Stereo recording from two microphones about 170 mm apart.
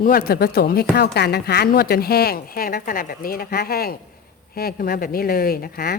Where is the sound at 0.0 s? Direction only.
60° left (ahead or behind).